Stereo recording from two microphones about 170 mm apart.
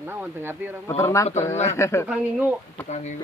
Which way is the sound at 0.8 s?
15° left (ahead or behind).